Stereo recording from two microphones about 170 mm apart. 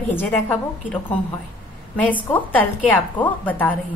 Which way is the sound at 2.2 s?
10° left (ahead or behind).